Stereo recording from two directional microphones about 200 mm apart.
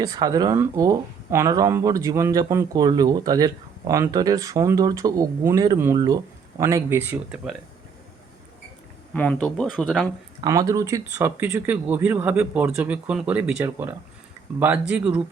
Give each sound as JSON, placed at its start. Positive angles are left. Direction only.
{"t": 0.0, "sound": "speech", "side_deg": -20}
{"t": 9.1, "sound": "speech", "side_deg": 5}
{"t": 10.4, "sound": "speech", "side_deg": -15}